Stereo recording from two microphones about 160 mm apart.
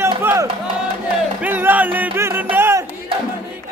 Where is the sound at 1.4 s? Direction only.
10° right (ahead or behind).